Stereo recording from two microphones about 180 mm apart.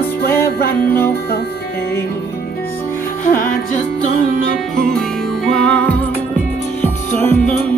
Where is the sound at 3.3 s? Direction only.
50° left (ahead or behind).